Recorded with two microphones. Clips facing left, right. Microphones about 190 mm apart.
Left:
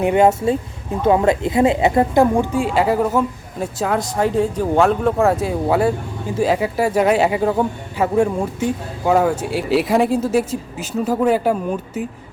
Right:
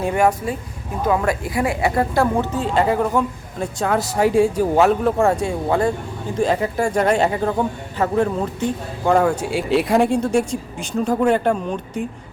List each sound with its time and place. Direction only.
0.0 s a woman's voice: 20° left (ahead or behind); by 12.0 s 5° left (ahead or behind)